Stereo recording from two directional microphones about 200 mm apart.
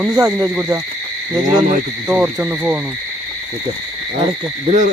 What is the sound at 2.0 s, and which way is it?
Hoot, 10° right (ahead or behind).